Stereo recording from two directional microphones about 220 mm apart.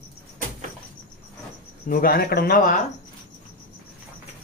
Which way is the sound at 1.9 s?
40° left (ahead or behind).